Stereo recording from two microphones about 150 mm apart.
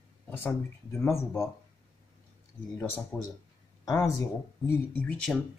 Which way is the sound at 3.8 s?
20° left (ahead or behind).